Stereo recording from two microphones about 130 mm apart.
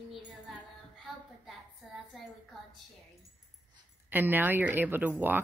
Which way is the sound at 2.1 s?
Centre (ahead or behind).